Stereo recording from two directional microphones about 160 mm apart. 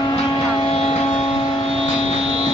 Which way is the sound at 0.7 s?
40° left (ahead or behind).